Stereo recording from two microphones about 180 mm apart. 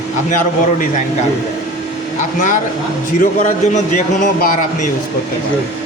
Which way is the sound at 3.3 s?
40° left (ahead or behind).